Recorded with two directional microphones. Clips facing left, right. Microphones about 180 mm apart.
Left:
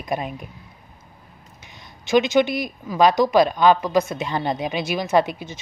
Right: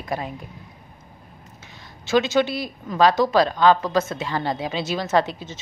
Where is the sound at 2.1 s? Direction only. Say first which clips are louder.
Left 2 dB; 15° left (ahead or behind).